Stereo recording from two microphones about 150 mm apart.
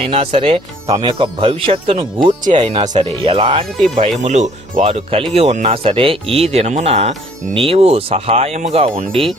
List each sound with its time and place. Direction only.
0.0 s speech: 40° right (ahead or behind)
0.9 s speech: 20° right (ahead or behind)
1.2 s speech: 35° right (ahead or behind)
2.4 s speech: 50° right (ahead or behind)
3.0 s speech: 40° right (ahead or behind)
4.2 s speech: 50° right (ahead or behind)
4.9 s speech: 40° right (ahead or behind)